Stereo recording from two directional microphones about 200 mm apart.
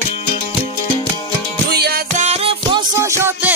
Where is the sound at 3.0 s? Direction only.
15° right (ahead or behind).